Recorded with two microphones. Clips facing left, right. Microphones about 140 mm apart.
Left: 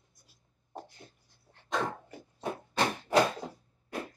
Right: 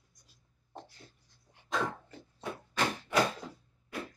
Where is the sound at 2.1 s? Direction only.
10° left (ahead or behind).